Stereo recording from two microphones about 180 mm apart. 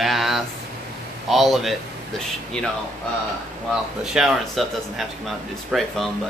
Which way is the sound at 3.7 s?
Centre (ahead or behind).